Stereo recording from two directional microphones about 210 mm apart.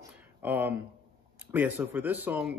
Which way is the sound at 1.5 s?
10° right (ahead or behind).